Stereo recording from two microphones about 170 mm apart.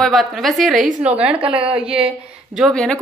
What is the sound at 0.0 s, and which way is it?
A woman's voice, centre (ahead or behind).